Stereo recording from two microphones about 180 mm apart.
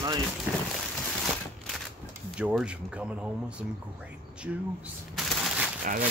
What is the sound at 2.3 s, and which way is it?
Speech, 5° right (ahead or behind).